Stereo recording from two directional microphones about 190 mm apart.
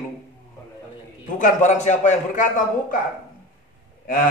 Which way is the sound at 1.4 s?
40° left (ahead or behind).